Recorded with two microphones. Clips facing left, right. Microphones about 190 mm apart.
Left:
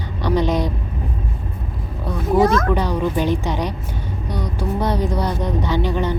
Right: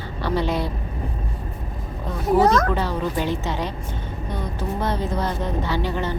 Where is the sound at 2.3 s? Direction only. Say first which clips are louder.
Left 2 dB; 15° left (ahead or behind).